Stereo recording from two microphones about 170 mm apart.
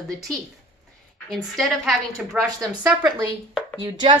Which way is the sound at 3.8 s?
25° right (ahead or behind).